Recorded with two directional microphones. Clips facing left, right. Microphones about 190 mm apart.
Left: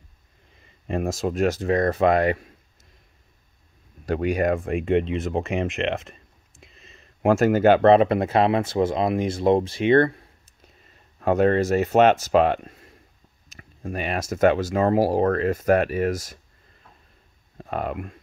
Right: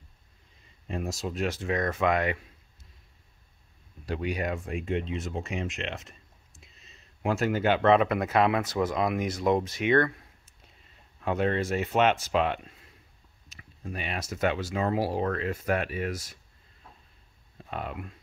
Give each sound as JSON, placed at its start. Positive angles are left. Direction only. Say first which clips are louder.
{"t": 0.8, "sound": "speech", "louder": "left 8 dB", "side_deg": 55}
{"t": 4.0, "sound": "speech", "louder": "left 8 dB", "side_deg": 50}
{"t": 11.1, "sound": "speech", "louder": "left 8 dB", "side_deg": 45}
{"t": 17.6, "sound": "speech", "louder": "left 8 dB", "side_deg": 50}